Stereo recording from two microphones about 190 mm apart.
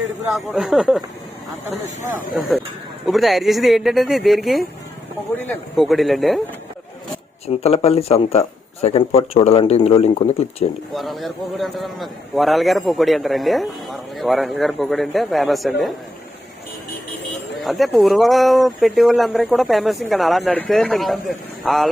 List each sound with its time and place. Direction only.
0.5 s a man's voice: centre (ahead or behind)
3.1 s a man's voice: centre (ahead or behind)
7.4 s speech: 35° left (ahead or behind)
10.9 s a man's voice: centre (ahead or behind)
17.6 s a man's voice: centre (ahead or behind)